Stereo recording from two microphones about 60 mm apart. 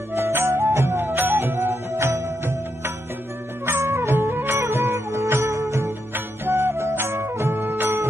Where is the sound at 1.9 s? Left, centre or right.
Right.